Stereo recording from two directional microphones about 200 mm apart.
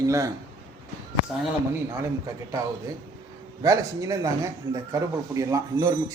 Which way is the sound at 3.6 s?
15° right (ahead or behind).